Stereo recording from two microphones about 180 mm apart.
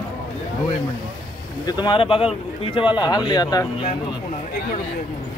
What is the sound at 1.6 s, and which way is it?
Speech, 25° left (ahead or behind).